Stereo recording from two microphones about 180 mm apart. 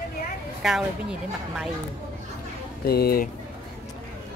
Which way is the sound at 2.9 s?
60° left (ahead or behind).